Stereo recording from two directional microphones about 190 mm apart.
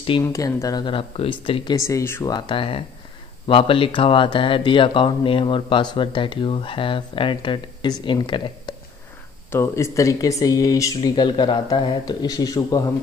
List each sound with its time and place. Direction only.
0.2 s speech: 15° left (ahead or behind)
1.9 s speech: 15° left (ahead or behind)